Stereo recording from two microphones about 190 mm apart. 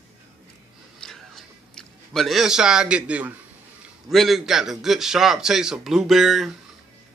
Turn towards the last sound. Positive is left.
turn(degrees=0)  # may be behind; listen again after turning